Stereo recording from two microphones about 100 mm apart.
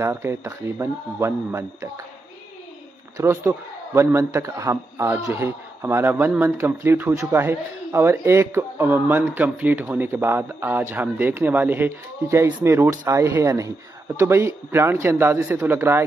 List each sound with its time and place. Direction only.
0.0 s speech: 25° right (ahead or behind)
3.2 s speech: 30° right (ahead or behind)